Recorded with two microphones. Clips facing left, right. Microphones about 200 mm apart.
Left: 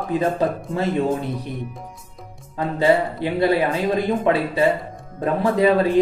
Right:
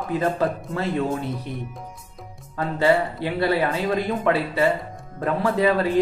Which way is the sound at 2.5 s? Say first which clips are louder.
Left 2 dB; 15° left (ahead or behind).